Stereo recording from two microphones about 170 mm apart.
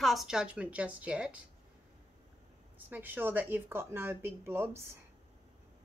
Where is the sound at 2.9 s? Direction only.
10° right (ahead or behind).